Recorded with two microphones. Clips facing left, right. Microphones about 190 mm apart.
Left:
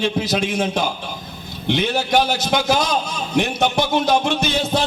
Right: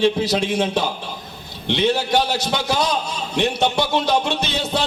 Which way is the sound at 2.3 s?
35° right (ahead or behind).